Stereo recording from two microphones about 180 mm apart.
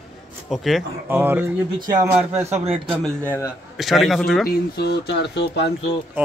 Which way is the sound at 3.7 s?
Centre (ahead or behind).